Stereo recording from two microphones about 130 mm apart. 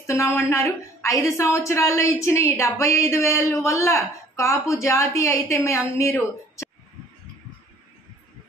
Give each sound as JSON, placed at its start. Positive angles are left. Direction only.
{"t": 0.0, "sound": "a woman's voice", "side_deg": 20}